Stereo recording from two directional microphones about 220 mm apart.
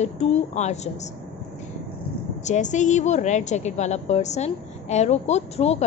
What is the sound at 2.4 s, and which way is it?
A woman's voice, 35° left (ahead or behind).